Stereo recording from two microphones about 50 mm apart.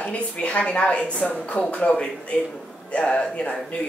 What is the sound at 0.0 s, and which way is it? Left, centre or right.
Speech, left.